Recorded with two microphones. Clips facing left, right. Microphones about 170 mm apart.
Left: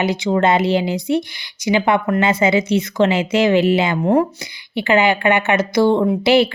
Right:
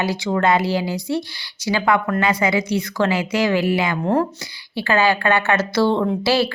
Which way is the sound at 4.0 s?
15° left (ahead or behind).